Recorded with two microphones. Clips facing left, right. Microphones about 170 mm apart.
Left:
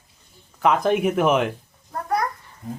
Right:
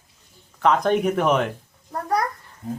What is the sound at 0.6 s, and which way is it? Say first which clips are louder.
Speech: even; 5° left (ahead or behind).